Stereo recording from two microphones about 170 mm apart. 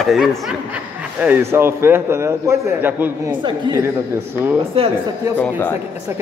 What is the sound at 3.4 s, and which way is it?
Speech, 25° right (ahead or behind).